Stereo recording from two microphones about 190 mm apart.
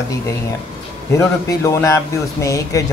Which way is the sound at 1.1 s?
15° left (ahead or behind).